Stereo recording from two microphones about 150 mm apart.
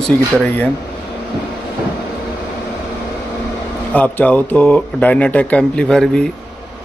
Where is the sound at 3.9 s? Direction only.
10° left (ahead or behind).